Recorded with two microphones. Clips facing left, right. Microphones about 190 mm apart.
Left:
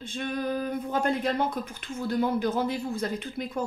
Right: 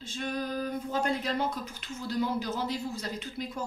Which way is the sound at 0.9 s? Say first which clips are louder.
Left 4 dB; 55° left (ahead or behind).